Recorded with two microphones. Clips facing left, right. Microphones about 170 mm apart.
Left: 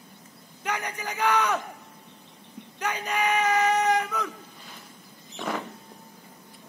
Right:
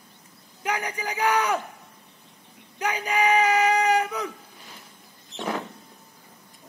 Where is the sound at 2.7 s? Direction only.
10° right (ahead or behind).